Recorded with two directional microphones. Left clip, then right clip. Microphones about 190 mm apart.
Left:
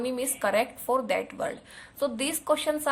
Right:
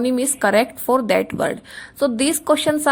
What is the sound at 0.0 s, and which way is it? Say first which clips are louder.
A woman's voice: right 9 dB; 40° right (ahead or behind).